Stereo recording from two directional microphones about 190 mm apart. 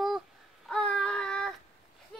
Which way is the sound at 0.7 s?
5° left (ahead or behind).